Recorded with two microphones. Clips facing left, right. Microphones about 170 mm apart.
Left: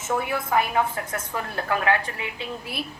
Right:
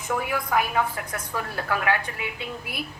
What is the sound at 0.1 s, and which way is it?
A woman's voice, 25° left (ahead or behind).